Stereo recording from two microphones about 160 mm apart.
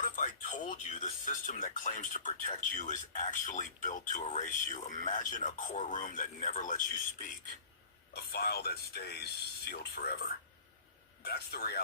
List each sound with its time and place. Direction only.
0.0 s speech: 50° left (ahead or behind)
8.1 s speech: 80° left
11.2 s speech: 80° left